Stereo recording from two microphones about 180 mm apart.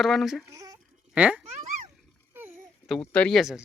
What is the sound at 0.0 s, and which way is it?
Speech, centre (ahead or behind).